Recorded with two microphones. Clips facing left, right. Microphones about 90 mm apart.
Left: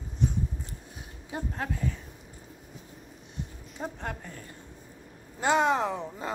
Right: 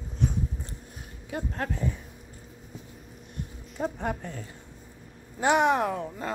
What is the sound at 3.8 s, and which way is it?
Speech, 10° right (ahead or behind).